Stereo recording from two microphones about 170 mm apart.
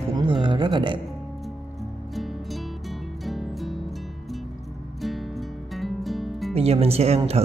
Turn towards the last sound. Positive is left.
turn(degrees=-35)  # may be behind; listen again after turning